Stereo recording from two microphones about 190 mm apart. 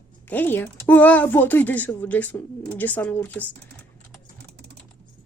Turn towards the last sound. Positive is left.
turn(degrees=-60)  # may be behind; listen again after turning